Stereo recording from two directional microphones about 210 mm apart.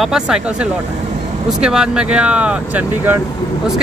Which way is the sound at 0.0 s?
5° right (ahead or behind).